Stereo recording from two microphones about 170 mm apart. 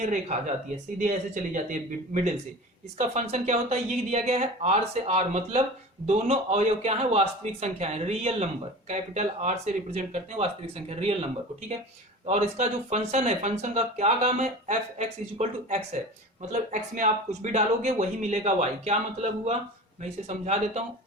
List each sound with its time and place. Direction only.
0.0 s speech: 45° right (ahead or behind)